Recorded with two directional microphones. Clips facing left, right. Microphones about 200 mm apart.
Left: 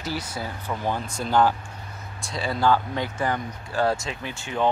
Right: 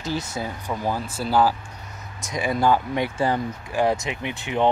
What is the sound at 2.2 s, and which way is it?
Speech, 20° right (ahead or behind).